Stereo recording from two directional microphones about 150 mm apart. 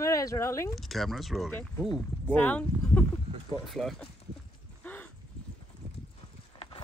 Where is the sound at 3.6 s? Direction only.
Centre (ahead or behind).